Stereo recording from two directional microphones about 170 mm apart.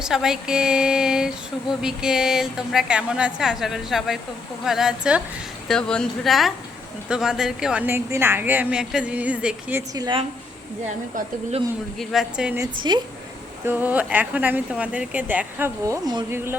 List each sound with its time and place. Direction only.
0.0 s a woman's voice: 5° right (ahead or behind)
9.9 s a woman's voice: 20° right (ahead or behind)
11.9 s a woman's voice: 5° right (ahead or behind)
12.9 s a woman's voice: 25° right (ahead or behind)
13.7 s a woman's voice: 10° right (ahead or behind)